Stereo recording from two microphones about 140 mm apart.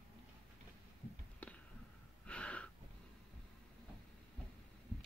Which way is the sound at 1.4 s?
10° left (ahead or behind).